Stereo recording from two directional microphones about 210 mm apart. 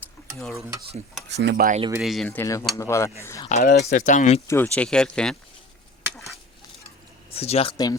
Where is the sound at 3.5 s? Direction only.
35° left (ahead or behind).